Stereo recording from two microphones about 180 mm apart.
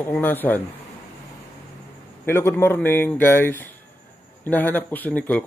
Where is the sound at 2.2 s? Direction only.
15° left (ahead or behind).